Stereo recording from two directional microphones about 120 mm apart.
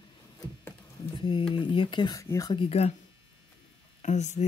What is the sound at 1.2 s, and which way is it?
Speech, 45° left (ahead or behind).